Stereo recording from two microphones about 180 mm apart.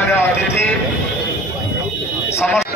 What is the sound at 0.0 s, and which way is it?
Music, 15° left (ahead or behind).